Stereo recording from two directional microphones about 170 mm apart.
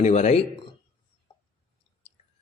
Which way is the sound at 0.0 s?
40° left (ahead or behind).